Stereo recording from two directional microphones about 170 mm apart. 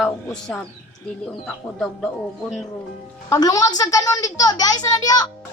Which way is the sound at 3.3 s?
20° left (ahead or behind).